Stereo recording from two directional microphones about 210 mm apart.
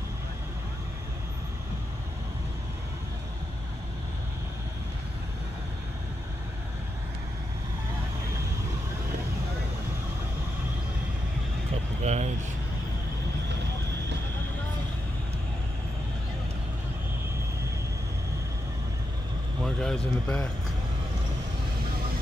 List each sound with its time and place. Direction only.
12.0 s vehicle: 30° right (ahead or behind)
19.6 s basketball bounce: 5° left (ahead or behind)